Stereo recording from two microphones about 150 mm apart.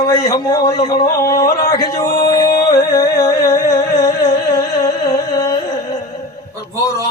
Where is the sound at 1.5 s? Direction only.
75° left (ahead or behind).